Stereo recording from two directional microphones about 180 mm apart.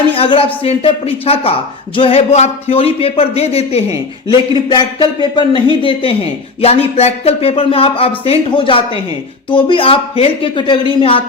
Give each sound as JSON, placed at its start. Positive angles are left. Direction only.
{"t": 0.2, "sound": "speech", "side_deg": 30}